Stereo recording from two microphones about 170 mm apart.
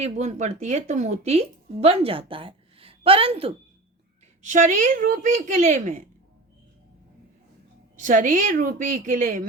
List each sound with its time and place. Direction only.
0.0 s a woman's voice: 40° right (ahead or behind)
4.4 s a woman's voice: 50° right (ahead or behind)
7.9 s a woman's voice: 50° right (ahead or behind)